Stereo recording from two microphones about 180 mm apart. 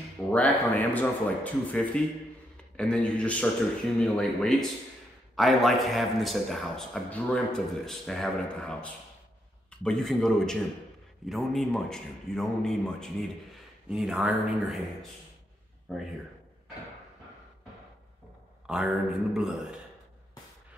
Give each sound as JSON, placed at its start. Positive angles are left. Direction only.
{"t": 0.3, "sound": "a man's voice", "side_deg": 10}
{"t": 18.7, "sound": "a man's voice", "side_deg": -5}